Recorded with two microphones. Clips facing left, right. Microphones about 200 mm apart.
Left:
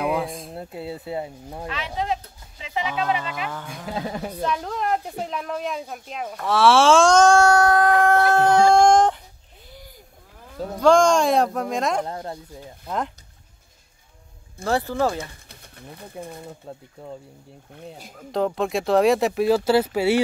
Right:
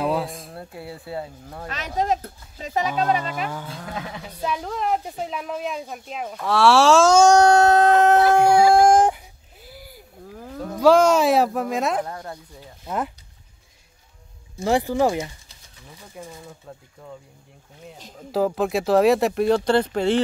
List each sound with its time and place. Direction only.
0.1 s a sound: centre (ahead or behind)
0.5 s speech: 20° left (ahead or behind)
1.7 s speech: 45° right (ahead or behind)
3.6 s speech: 15° left (ahead or behind)
3.9 s a woman's voice: 35° left (ahead or behind)
4.4 s speech: 5° right (ahead or behind); by 8.2 s 25° right (ahead or behind)
8.4 s a sound: 10° right (ahead or behind)
10.8 s speech: 5° right (ahead or behind)
12.1 s speech: 25° left (ahead or behind)
12.8 s speech: 5° right (ahead or behind)
14.6 s speech: 15° right (ahead or behind)
15.4 s speech: 60° left (ahead or behind)
16.6 s speech: 30° left (ahead or behind)
18.3 s speech: 5° right (ahead or behind)